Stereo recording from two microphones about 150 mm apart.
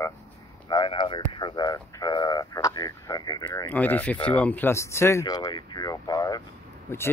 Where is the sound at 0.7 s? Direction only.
30° left (ahead or behind).